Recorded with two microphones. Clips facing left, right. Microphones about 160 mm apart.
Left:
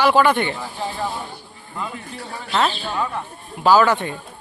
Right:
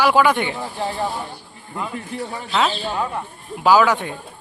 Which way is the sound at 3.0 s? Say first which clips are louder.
Even; 10° right (ahead or behind).